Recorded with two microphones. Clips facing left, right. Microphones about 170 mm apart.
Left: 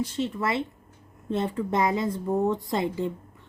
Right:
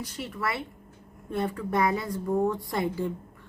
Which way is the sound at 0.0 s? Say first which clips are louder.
Left 5 dB; 25° left (ahead or behind).